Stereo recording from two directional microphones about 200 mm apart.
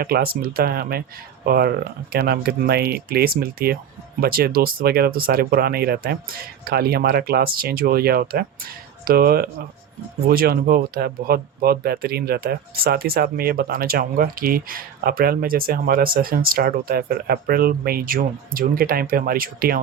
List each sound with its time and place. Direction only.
0.0 s speech: 50° right (ahead or behind)